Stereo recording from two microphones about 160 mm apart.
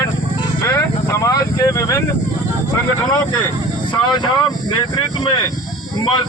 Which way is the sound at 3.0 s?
25° left (ahead or behind).